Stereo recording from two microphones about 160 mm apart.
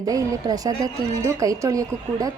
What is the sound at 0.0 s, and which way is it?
A woman's voice, 20° right (ahead or behind).